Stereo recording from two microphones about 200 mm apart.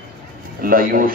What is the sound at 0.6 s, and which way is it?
Speech, 45° right (ahead or behind).